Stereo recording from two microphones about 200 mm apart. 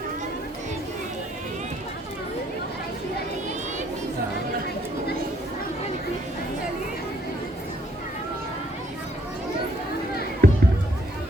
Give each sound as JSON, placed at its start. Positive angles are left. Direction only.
{"t": 10.4, "sound": "music", "side_deg": -50}